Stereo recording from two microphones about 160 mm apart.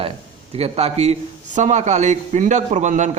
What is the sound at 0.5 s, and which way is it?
A man's voice, 40° right (ahead or behind).